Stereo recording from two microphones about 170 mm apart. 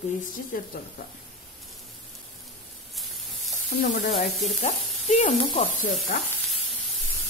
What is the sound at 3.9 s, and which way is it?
Speech, 45° left (ahead or behind).